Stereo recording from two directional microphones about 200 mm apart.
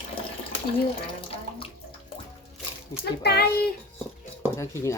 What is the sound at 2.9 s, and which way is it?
Speech, 55° left (ahead or behind).